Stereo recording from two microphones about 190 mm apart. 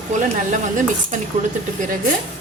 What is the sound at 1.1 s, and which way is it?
Speech, 40° right (ahead or behind).